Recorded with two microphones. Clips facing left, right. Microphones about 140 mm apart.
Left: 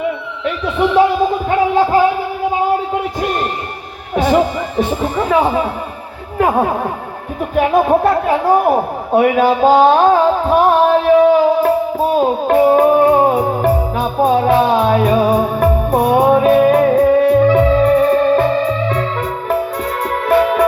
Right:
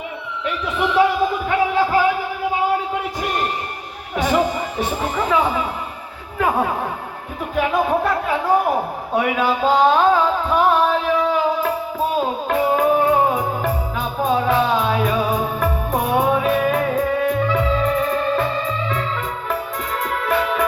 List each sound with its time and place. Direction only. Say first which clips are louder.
1.5 s music: left 6 dB; 30° left (ahead or behind)
4.2 s music: left 5 dB; 45° left (ahead or behind)
5.3 s speech: left 5 dB; 40° left (ahead or behind)
7.5 s speech: left 6 dB; 40° left (ahead or behind)
9.1 s music: left 8 dB; 45° left (ahead or behind)
20.2 s music: left 9 dB; 40° left (ahead or behind)